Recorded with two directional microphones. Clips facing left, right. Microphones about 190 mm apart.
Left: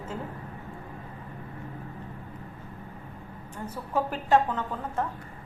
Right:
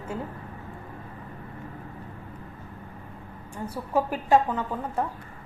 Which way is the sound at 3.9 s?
10° right (ahead or behind).